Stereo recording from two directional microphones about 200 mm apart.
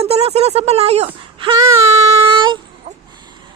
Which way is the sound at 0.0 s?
30° right (ahead or behind).